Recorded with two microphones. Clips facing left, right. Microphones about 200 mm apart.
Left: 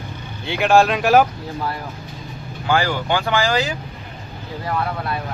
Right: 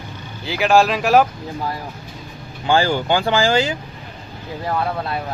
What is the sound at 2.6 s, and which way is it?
Speech, 30° right (ahead or behind).